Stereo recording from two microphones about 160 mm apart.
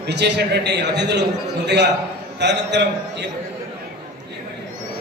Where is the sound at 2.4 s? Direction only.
90° right.